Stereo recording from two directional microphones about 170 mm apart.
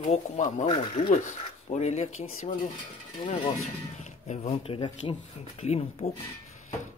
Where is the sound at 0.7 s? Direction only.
25° left (ahead or behind).